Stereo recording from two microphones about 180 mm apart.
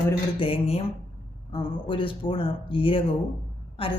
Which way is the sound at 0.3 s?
30° left (ahead or behind).